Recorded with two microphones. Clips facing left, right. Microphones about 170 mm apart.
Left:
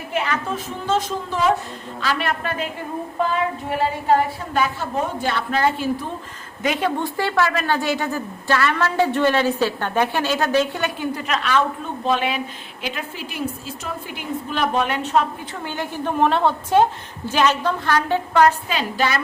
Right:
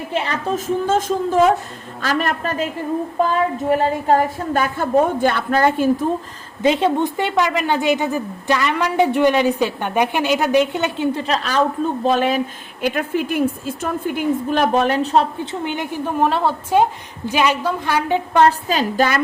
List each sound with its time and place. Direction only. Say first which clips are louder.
0.1 s a woman's voice: right 2 dB; 35° right (ahead or behind)
3.7 s a woman's voice: right 3 dB; 45° right (ahead or behind)
6.6 s a woman's voice: right 6 dB; 25° right (ahead or behind)
12.8 s a woman's voice: right 10 dB; 55° right (ahead or behind); by 15.3 s 35° right (ahead or behind)
15.6 s a woman's voice: right 2 dB; 20° right (ahead or behind)
16.0 s a woman's voice: even; 5° right (ahead or behind)
18.7 s a woman's voice: right 4 dB; 40° right (ahead or behind)